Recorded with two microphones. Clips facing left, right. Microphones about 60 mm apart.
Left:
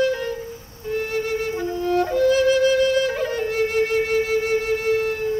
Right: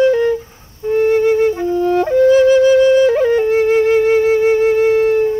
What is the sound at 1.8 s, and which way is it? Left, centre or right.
Flute, right.